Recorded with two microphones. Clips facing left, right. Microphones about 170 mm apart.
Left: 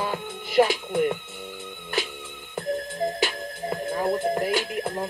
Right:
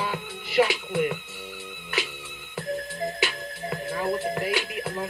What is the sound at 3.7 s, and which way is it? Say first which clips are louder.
Music: left 2 dB; 25° left (ahead or behind).